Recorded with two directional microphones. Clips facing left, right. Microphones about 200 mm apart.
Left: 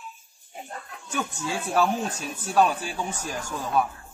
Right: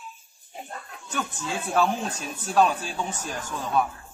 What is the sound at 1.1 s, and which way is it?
Speech, 10° left (ahead or behind).